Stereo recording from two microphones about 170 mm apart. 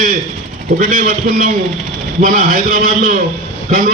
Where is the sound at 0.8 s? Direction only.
50° right (ahead or behind).